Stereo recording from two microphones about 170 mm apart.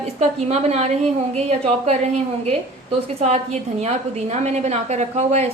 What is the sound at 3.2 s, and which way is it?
A woman's voice, 40° right (ahead or behind).